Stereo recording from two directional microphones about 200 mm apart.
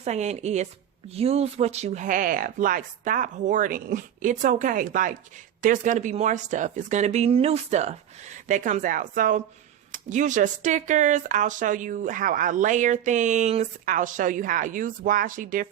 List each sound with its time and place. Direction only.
0.0 s speech: 35° right (ahead or behind)